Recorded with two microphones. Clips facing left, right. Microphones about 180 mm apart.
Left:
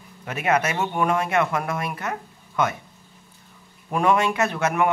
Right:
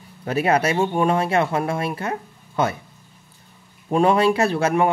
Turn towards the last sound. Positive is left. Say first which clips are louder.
# right 3 dB
turn(degrees=-30)  # may be behind; listen again after turning